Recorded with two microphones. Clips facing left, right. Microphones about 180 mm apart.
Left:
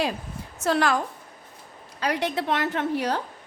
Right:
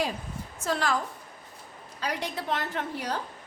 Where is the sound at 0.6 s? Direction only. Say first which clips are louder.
Left 6 dB; 70° left (ahead or behind).